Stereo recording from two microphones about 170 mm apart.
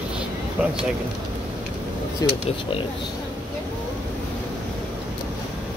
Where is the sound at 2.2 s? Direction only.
20° left (ahead or behind).